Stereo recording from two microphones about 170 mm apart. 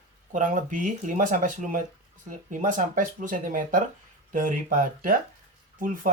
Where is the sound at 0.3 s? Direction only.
50° right (ahead or behind).